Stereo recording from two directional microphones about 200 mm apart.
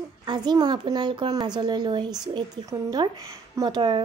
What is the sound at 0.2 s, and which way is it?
A woman's voice, 20° right (ahead or behind).